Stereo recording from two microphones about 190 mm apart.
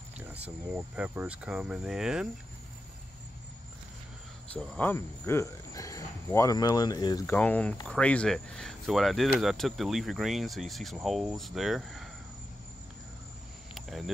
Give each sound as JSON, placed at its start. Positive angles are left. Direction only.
{"t": 0.2, "sound": "speech", "side_deg": -10}
{"t": 4.6, "sound": "speech", "side_deg": 10}
{"t": 7.3, "sound": "speech", "side_deg": 10}
{"t": 13.7, "sound": "cricket", "side_deg": 0}